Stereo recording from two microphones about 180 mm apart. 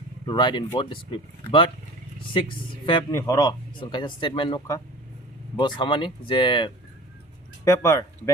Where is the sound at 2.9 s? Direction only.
20° left (ahead or behind).